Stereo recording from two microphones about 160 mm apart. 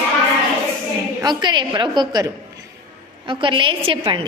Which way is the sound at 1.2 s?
25° right (ahead or behind).